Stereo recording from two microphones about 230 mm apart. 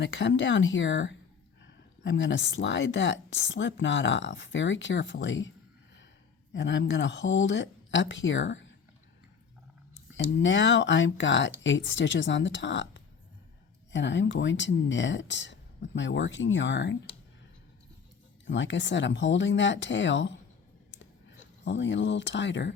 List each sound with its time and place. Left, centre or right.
0.0 s speech: left
6.5 s speech: left
10.3 s speech: left
18.4 s speech: left
20.9 s a sound: left